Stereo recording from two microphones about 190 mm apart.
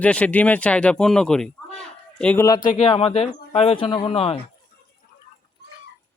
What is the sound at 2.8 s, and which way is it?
Speech, 30° left (ahead or behind).